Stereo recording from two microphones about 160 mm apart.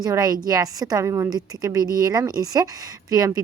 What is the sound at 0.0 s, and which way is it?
A woman's voice, 25° right (ahead or behind).